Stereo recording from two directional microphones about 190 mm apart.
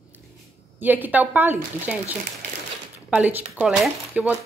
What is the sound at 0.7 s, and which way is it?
Speech, 10° right (ahead or behind).